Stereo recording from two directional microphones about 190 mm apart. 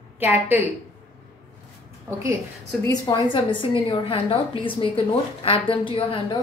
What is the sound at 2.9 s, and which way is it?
A woman's voice, 20° left (ahead or behind).